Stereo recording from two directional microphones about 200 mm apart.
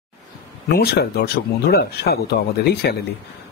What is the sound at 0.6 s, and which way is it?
Speech, 55° left (ahead or behind).